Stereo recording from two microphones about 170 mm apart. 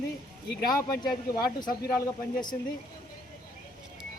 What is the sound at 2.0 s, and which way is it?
Speech, 25° left (ahead or behind).